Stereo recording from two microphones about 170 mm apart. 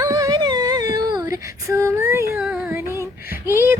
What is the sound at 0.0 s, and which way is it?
Humming, 20° right (ahead or behind).